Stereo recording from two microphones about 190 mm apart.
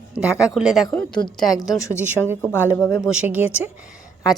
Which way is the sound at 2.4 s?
15° left (ahead or behind).